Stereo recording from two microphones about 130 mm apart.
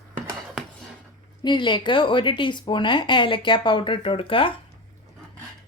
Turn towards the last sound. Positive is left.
turn(degrees=45)  # may be behind; listen again after turning